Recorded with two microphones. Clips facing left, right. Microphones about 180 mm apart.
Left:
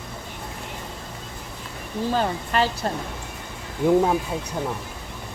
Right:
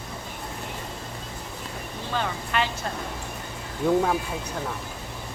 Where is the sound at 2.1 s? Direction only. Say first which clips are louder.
Left 4 dB; 40° left (ahead or behind).